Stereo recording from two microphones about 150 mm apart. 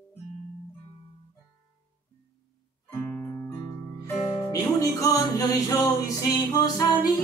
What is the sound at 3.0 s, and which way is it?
Music, 15° left (ahead or behind).